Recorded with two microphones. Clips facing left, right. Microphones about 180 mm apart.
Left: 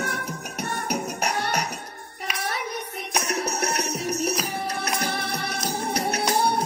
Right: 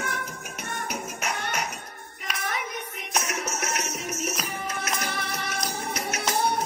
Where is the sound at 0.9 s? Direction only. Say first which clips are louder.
Left 7 dB; 40° left (ahead or behind).